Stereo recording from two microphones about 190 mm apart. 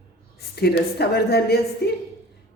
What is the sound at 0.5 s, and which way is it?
Speech, 60° left (ahead or behind).